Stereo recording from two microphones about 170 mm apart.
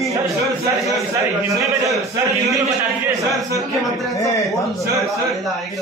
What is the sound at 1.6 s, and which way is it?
Speech, 20° right (ahead or behind).